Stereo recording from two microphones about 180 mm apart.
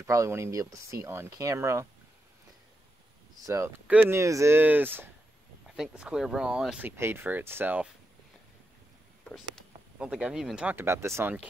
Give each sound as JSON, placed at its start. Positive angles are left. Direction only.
{"t": 0.0, "sound": "speech", "side_deg": -15}
{"t": 3.4, "sound": "speech", "side_deg": -15}
{"t": 9.2, "sound": "speech", "side_deg": 0}